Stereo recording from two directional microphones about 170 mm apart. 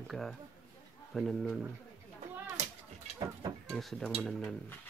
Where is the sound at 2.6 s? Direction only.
45° right (ahead or behind).